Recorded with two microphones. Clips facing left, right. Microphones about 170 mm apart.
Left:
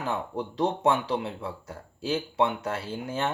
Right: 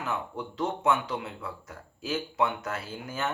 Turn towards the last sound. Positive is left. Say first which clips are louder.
# left 4 dB
turn(degrees=30)  # may be behind; listen again after turning